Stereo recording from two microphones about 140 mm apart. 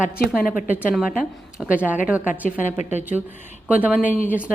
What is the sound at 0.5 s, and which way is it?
A woman's voice, 10° right (ahead or behind).